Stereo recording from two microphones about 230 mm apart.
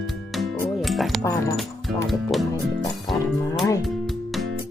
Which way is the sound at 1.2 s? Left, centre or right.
Centre.